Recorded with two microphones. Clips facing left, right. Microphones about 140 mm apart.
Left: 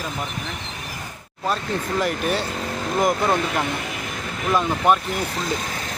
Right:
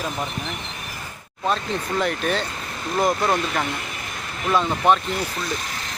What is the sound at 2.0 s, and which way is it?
Speech, 5° left (ahead or behind).